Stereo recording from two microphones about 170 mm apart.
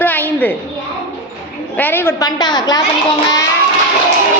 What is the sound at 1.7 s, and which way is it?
A woman's voice, 10° left (ahead or behind).